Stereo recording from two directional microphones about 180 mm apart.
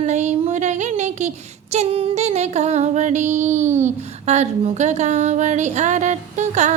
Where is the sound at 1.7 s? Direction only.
35° right (ahead or behind).